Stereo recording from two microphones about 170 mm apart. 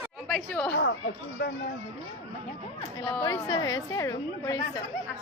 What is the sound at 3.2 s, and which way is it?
A woman's voice, 20° left (ahead or behind).